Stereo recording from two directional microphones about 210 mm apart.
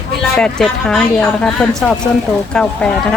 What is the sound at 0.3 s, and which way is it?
Speech, 5° left (ahead or behind).